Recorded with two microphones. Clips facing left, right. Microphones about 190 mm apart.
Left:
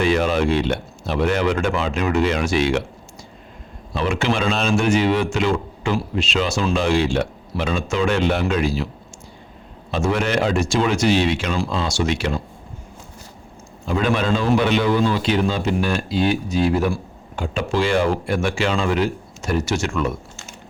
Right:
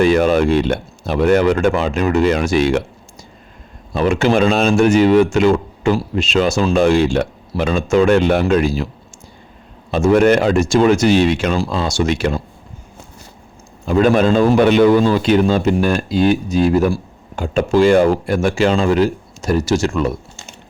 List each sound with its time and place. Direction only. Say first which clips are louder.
0.0 s a man's voice: right 6 dB; 45° right (ahead or behind)
3.9 s a man's voice: right 7 dB; 45° right (ahead or behind)
9.9 s a man's voice: right 9 dB; 45° right (ahead or behind)
13.8 s a man's voice: right 7 dB; 45° right (ahead or behind)